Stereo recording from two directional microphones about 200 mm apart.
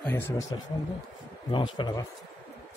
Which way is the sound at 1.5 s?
25° left (ahead or behind).